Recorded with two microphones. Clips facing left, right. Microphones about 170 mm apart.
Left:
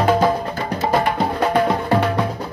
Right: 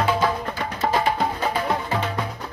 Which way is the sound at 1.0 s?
60° left (ahead or behind).